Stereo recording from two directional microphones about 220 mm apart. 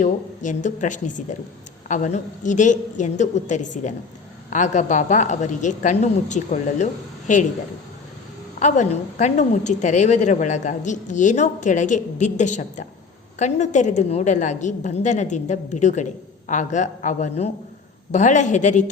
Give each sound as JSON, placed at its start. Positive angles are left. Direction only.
{"t": 0.0, "sound": "a woman's voice", "side_deg": 35}
{"t": 8.5, "sound": "a woman's voice", "side_deg": 35}